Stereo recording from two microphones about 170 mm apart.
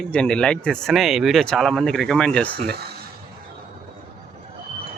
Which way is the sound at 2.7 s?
70° right (ahead or behind).